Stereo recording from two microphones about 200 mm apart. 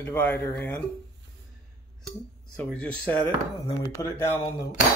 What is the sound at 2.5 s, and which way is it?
Speech, 5° left (ahead or behind).